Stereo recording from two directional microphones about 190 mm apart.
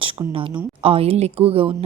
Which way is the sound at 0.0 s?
30° right (ahead or behind).